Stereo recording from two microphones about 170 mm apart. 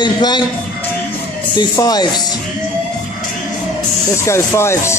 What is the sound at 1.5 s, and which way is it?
Speech, 25° left (ahead or behind).